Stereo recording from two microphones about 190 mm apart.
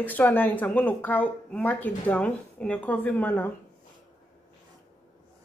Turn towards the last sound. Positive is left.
turn(degrees=10)  # may be behind; listen again after turning